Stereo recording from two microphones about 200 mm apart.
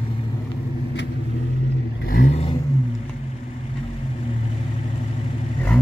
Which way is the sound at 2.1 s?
40° left (ahead or behind).